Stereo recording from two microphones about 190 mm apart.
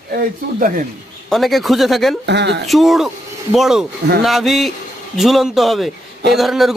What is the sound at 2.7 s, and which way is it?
Speech, centre (ahead or behind).